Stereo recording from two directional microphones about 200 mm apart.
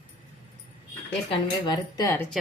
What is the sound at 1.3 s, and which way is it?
Speech, 20° left (ahead or behind).